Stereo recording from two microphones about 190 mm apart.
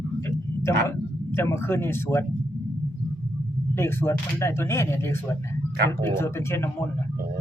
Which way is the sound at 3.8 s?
15° left (ahead or behind).